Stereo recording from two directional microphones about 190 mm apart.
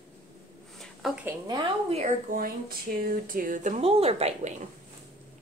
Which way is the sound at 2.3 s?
50° right (ahead or behind).